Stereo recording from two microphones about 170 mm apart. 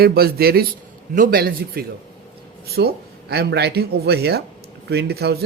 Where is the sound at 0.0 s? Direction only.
65° right (ahead or behind).